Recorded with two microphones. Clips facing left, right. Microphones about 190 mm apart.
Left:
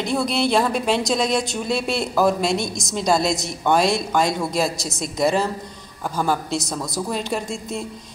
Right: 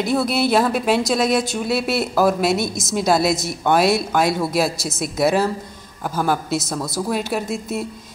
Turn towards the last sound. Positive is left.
turn(degrees=-5)  # may be behind; listen again after turning